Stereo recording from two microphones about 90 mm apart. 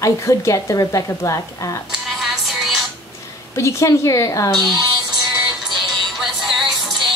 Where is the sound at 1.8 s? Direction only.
Centre (ahead or behind).